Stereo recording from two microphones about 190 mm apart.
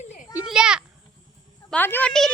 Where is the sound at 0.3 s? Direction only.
5° right (ahead or behind).